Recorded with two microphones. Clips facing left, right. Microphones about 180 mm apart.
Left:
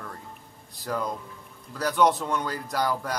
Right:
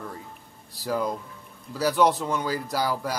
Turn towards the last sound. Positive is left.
turn(degrees=-5)  # may be behind; listen again after turning